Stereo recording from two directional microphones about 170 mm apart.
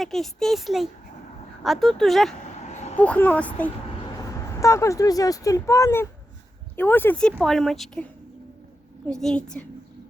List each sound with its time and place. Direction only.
0.0 s speech: centre (ahead or behind)
2.6 s a sound: 40° left (ahead or behind)
3.0 s speech: 10° left (ahead or behind)
4.2 s speech: 20° left (ahead or behind); by 8.0 s centre (ahead or behind)
9.0 s speech: 5° left (ahead or behind)